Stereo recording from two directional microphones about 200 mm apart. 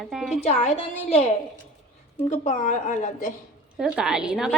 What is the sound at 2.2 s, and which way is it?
A woman's voice, 35° left (ahead or behind).